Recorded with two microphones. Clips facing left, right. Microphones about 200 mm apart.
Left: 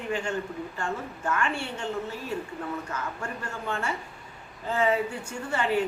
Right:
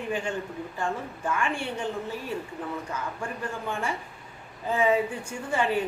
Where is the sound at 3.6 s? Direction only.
15° right (ahead or behind).